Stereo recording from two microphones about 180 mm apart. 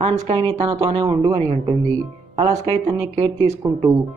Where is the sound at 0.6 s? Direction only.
30° right (ahead or behind).